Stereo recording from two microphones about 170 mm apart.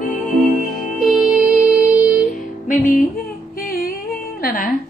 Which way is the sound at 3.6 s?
60° left (ahead or behind).